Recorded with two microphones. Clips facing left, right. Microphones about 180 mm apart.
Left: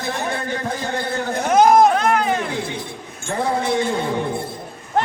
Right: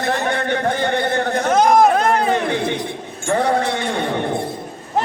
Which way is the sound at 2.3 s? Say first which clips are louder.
Right 4 dB; 75° right (ahead or behind).